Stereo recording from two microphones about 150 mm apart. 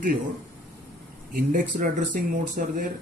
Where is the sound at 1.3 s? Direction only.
65° right (ahead or behind).